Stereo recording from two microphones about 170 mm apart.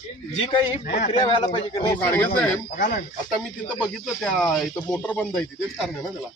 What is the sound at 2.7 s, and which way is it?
Speech, 55° left (ahead or behind).